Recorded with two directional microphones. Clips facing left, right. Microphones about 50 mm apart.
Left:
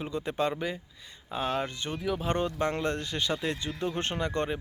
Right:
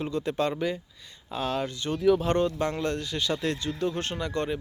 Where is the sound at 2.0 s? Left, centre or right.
Centre; by 3.3 s left.